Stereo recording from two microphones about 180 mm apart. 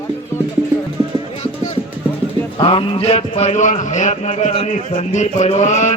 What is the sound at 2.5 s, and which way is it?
A man's voice, 30° left (ahead or behind).